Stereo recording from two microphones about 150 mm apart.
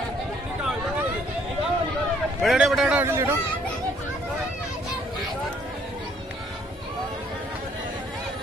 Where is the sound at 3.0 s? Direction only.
20° right (ahead or behind).